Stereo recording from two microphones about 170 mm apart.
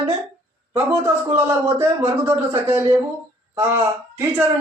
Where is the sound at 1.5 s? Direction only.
15° right (ahead or behind).